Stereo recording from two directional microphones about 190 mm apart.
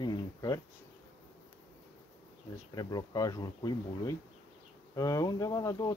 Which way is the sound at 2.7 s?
20° left (ahead or behind).